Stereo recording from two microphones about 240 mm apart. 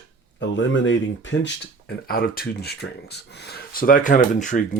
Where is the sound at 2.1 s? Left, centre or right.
Left.